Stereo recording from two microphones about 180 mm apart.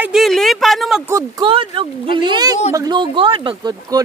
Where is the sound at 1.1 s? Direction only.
20° right (ahead or behind).